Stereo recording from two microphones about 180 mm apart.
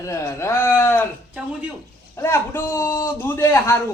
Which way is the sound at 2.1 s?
15° left (ahead or behind).